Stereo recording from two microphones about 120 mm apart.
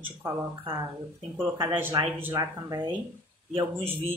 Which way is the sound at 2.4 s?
30° right (ahead or behind).